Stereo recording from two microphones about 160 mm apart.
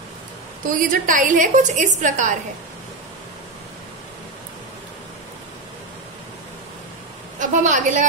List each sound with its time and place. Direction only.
0.7 s a woman's voice: 55° right (ahead or behind)
7.3 s a woman's voice: 50° right (ahead or behind)